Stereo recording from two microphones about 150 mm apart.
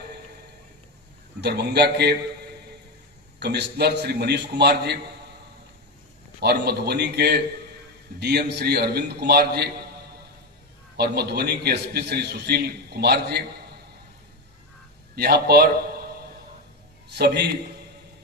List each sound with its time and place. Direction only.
1.4 s a man's voice: 90° right
3.3 s a man's voice: 90° right
6.4 s a man's voice: 90° right
11.0 s a man's voice: 90° right
15.1 s a man's voice: 90° right
17.1 s a man's voice: 90° right